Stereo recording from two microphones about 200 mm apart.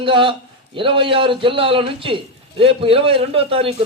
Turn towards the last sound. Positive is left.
turn(degrees=-30)  # may be behind; listen again after turning